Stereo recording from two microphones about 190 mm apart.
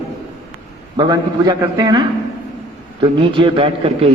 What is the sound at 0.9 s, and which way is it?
A man's voice, 20° right (ahead or behind).